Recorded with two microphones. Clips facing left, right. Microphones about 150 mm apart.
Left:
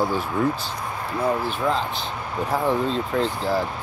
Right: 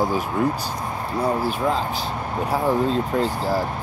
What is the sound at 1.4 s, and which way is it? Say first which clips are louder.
Speech: right 1 dB; 10° right (ahead or behind).